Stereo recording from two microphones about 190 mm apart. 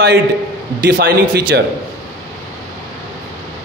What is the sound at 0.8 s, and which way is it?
Speech, 55° right (ahead or behind).